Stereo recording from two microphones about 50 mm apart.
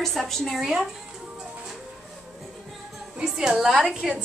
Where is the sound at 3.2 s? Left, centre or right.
Centre.